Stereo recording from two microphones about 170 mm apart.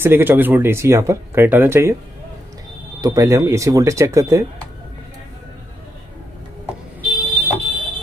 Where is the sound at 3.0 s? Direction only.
20° right (ahead or behind).